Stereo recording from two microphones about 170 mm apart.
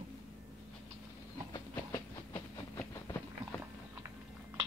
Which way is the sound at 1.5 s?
15° left (ahead or behind).